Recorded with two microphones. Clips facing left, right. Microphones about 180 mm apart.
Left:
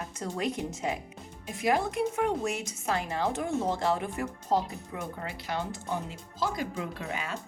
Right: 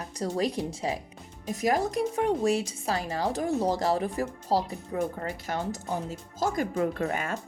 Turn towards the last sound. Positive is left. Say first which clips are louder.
# right 6 dB
turn(degrees=-50)  # may be behind; listen again after turning